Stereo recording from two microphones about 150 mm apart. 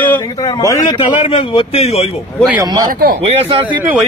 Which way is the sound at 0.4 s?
20° left (ahead or behind).